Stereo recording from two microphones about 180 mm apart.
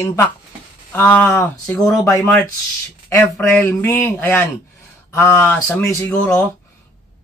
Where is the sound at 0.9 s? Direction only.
10° left (ahead or behind).